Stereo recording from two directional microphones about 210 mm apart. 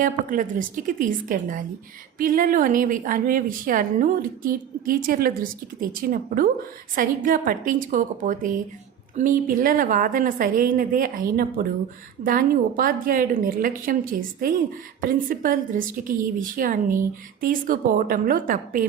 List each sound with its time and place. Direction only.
0.0 s a woman's voice: 40° right (ahead or behind)